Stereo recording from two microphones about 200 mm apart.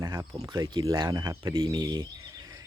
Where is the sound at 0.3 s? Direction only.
20° right (ahead or behind).